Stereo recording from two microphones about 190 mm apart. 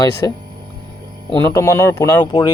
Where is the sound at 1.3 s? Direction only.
15° left (ahead or behind).